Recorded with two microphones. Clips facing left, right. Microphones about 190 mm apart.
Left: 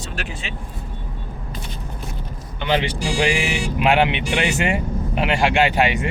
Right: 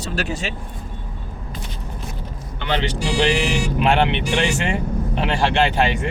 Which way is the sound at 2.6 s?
15° left (ahead or behind).